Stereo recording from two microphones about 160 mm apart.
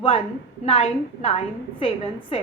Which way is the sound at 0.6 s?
35° left (ahead or behind).